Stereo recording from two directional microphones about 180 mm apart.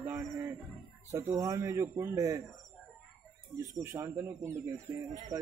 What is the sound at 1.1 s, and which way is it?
Speech, 15° right (ahead or behind).